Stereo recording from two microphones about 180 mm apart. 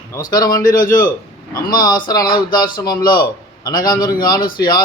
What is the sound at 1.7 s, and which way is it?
A man's voice, 20° left (ahead or behind).